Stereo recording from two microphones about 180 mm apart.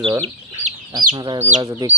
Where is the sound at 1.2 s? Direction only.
25° right (ahead or behind).